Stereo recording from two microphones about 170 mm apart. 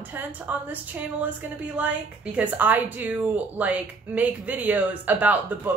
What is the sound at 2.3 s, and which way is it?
Speech, 10° right (ahead or behind).